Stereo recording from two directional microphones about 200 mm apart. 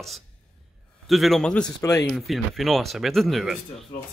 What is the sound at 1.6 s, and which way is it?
Speech, 15° left (ahead or behind).